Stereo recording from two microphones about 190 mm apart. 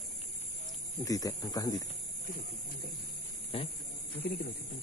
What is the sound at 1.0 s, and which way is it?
Speech, 20° left (ahead or behind).